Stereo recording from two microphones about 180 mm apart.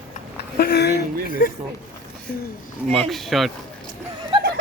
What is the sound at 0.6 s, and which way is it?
Speech, 60° left (ahead or behind).